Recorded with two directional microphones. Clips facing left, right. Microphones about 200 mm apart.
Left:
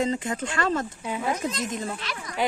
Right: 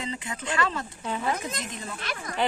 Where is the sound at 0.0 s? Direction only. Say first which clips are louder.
Left 8 dB; 45° left (ahead or behind).